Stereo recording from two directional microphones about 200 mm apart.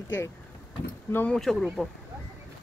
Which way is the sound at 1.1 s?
5° left (ahead or behind).